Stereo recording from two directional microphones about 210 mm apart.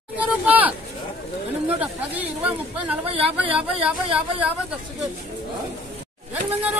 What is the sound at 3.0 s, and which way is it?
Speech, 25° right (ahead or behind).